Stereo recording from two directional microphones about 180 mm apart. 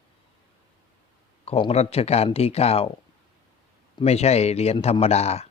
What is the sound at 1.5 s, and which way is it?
Speech, 35° left (ahead or behind).